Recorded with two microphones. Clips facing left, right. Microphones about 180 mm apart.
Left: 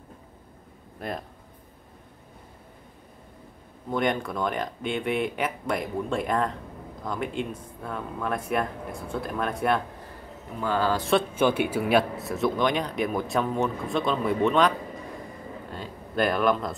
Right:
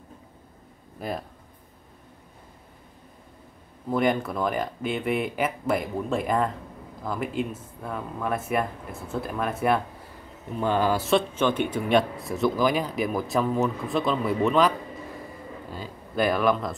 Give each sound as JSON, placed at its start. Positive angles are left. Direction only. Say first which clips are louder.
{"t": 0.9, "sound": "speech", "louder": "right 2 dB", "side_deg": 0}
{"t": 3.9, "sound": "speech", "louder": "right 2 dB", "side_deg": -5}
{"t": 10.6, "sound": "speech", "louder": "right 2 dB", "side_deg": -15}
{"t": 11.3, "sound": "speech", "louder": "left 1 dB", "side_deg": 10}
{"t": 15.7, "sound": "speech", "louder": "even", "side_deg": 0}